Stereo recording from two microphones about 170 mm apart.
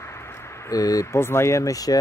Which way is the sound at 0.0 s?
15° left (ahead or behind).